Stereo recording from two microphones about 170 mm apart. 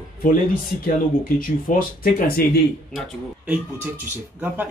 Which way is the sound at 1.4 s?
55° left (ahead or behind).